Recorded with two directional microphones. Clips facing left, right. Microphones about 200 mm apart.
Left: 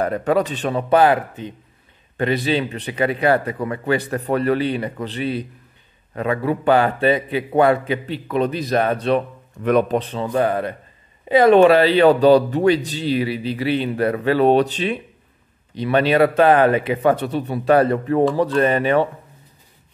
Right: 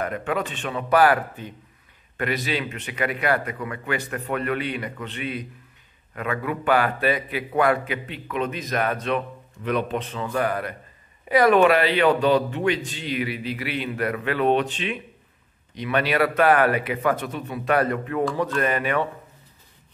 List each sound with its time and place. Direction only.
0.0 s a man's voice: 35° left (ahead or behind)
9.6 s speech: 45° left (ahead or behind); by 19.0 s 30° left (ahead or behind)